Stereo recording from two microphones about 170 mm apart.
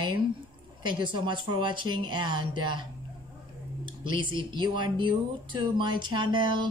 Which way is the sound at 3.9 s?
30° right (ahead or behind).